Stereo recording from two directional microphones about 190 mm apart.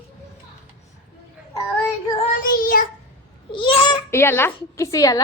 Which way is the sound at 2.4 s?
50° left (ahead or behind).